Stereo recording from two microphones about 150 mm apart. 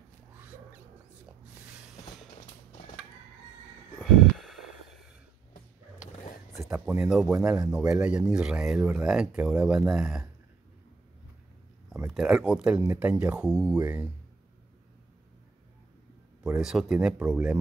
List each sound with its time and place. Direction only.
4.0 s a sound: centre (ahead or behind)
6.7 s speech: 5° right (ahead or behind)
12.1 s speech: 5° right (ahead or behind)
16.6 s speech: 5° right (ahead or behind)